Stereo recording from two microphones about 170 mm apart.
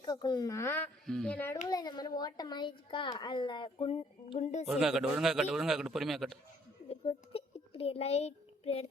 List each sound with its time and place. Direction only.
0.0 s speech: 25° left (ahead or behind); by 1.5 s 10° left (ahead or behind)
1.7 s a child's voice: 25° left (ahead or behind)
4.6 s a man's voice: centre (ahead or behind)
6.8 s a sound: 35° left (ahead or behind)